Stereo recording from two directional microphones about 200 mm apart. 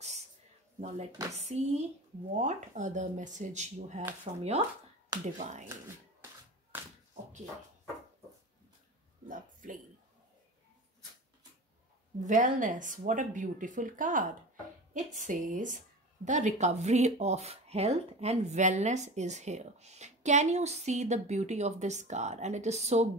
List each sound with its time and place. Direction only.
0.7 s speech: 35° right (ahead or behind)
9.3 s speech: 40° right (ahead or behind)
12.2 s speech: 40° right (ahead or behind)